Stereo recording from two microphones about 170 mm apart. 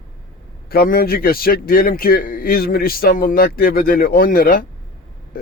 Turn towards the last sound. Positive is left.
turn(degrees=55)  # may be behind; listen again after turning